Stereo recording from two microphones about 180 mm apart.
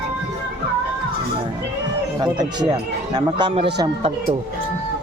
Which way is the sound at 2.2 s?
25° right (ahead or behind).